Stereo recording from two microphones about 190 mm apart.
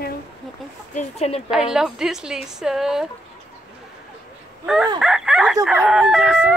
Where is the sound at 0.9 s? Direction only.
35° left (ahead or behind).